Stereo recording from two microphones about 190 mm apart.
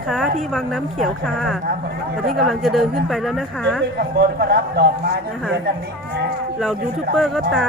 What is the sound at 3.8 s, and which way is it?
Speech, 60° right (ahead or behind).